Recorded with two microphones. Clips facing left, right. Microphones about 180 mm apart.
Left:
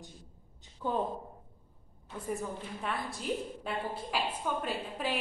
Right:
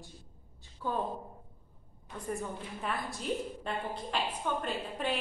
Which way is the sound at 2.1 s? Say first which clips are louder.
Left 1 dB; 5° left (ahead or behind).